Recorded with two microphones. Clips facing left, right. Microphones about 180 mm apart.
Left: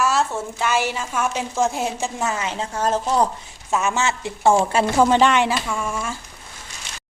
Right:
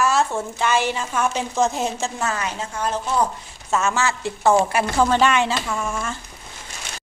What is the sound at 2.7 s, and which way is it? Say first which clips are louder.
Speech: left 4 dB; 40° left (ahead or behind).